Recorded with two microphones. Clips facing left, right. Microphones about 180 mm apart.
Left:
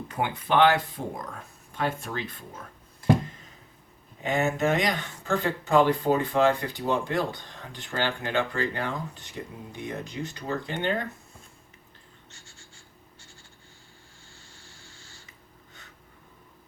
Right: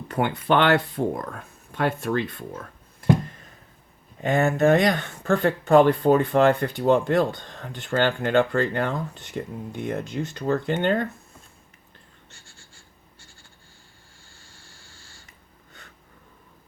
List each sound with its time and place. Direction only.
0.1 s speech: 65° right (ahead or behind)
4.2 s speech: 55° right (ahead or behind)